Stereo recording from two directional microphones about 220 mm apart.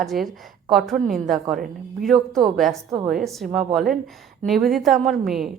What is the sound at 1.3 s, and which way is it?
A woman's voice, centre (ahead or behind).